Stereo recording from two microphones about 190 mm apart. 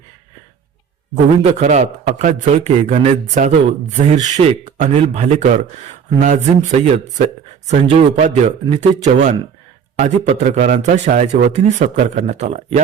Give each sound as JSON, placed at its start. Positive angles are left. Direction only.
{"t": 1.1, "sound": "a man's voice", "side_deg": -40}